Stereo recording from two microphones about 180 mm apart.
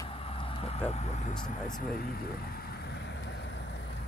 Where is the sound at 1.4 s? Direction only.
45° left (ahead or behind); by 4.0 s 75° left (ahead or behind).